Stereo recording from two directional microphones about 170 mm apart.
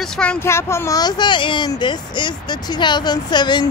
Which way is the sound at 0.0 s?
5° left (ahead or behind).